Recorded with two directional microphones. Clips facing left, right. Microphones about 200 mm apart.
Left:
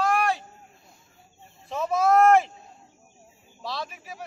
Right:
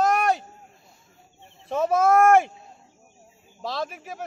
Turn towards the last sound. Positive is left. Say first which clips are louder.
# right 4 dB
turn(degrees=-50)  # may be behind; listen again after turning